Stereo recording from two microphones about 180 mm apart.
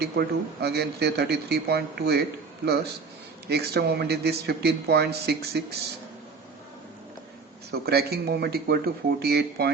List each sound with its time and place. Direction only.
0.0 s speech: 65° right (ahead or behind)
3.5 s speech: 65° right (ahead or behind)
7.7 s speech: 60° right (ahead or behind)